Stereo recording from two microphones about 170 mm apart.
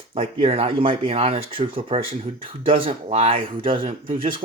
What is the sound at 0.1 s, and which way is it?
Speech, 35° right (ahead or behind).